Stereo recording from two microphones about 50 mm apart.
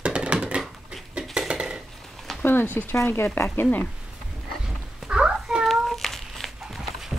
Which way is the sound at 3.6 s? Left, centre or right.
Left.